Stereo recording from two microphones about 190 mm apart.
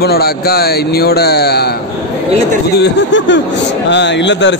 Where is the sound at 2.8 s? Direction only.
70° left (ahead or behind).